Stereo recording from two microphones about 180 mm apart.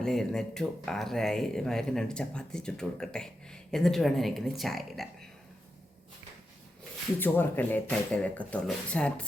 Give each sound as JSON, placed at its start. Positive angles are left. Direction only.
{"t": 0.0, "sound": "speech", "side_deg": 0}
{"t": 7.2, "sound": "speech", "side_deg": 10}